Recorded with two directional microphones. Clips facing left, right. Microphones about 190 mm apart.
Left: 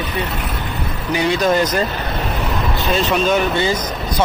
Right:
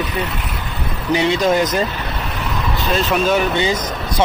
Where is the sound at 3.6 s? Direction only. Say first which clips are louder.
Even; 15° right (ahead or behind).